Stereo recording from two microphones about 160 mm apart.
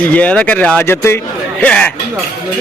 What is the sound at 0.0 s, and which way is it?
A man's voice, 10° left (ahead or behind).